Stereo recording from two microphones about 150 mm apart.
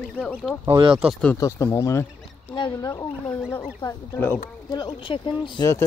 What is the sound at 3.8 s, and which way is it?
Speech, 15° left (ahead or behind).